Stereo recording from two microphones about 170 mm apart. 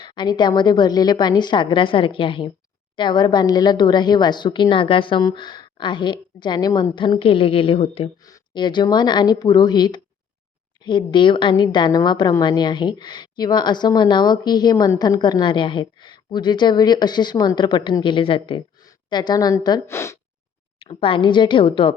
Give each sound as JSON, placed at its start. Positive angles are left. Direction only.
{"t": 0.0, "sound": "a woman's voice", "side_deg": 25}
{"t": 20.7, "sound": "speech", "side_deg": 30}